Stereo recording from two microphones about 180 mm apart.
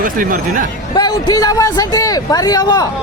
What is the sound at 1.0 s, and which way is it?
A man's voice, 20° left (ahead or behind).